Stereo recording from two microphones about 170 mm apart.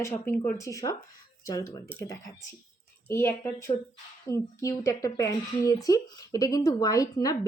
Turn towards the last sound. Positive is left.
turn(degrees=20)  # may be behind; listen again after turning